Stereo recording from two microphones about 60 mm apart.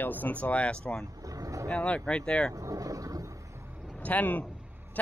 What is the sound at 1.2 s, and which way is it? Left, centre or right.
Boat, right.